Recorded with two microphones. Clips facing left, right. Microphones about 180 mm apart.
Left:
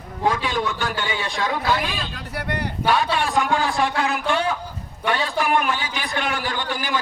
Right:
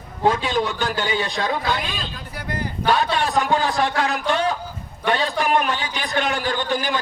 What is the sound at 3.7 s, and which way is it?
Speech, 40° right (ahead or behind).